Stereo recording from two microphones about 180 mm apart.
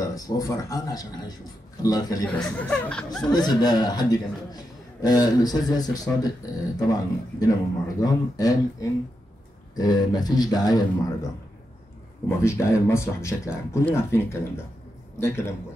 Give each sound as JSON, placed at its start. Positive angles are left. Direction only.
{"t": 0.0, "sound": "a man's voice", "side_deg": 20}
{"t": 2.3, "sound": "speech", "side_deg": 5}
{"t": 3.3, "sound": "a man's voice", "side_deg": 20}
{"t": 12.3, "sound": "speech", "side_deg": 15}